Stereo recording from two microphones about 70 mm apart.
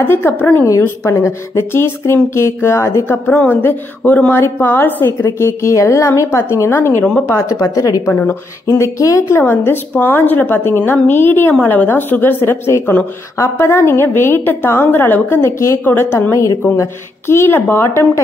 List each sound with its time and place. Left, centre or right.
0.1 s a woman's voice: left
0.8 s a woman's voice: left
3.4 s a woman's voice: left
7.7 s speech: left
9.3 s a woman's voice: left
17.5 s a woman's voice: left